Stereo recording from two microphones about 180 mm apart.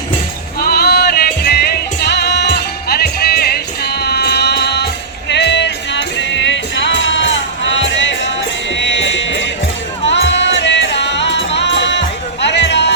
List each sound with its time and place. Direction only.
0.7 s music: 60° left (ahead or behind)